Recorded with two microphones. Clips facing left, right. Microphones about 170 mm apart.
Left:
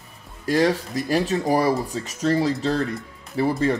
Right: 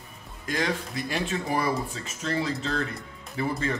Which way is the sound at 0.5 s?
35° left (ahead or behind).